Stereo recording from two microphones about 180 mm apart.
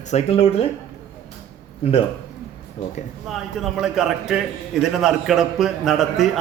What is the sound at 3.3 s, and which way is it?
A man's voice, centre (ahead or behind).